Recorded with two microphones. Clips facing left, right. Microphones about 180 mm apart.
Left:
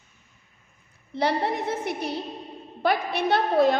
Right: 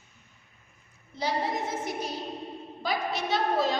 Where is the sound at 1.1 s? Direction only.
60° left (ahead or behind).